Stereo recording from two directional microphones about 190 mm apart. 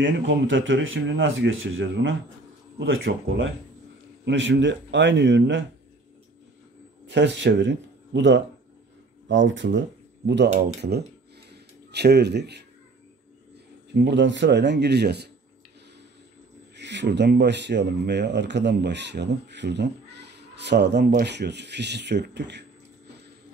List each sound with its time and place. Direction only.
0.0 s speech: 75° right (ahead or behind)
3.1 s speech: 60° right (ahead or behind)
4.2 s speech: 70° right (ahead or behind)
7.1 s speech: 65° right (ahead or behind)
10.5 s speech: 35° right (ahead or behind)
10.8 s speech: 60° right (ahead or behind)
13.9 s speech: 65° right (ahead or behind)
16.7 s speech: 65° right (ahead or behind)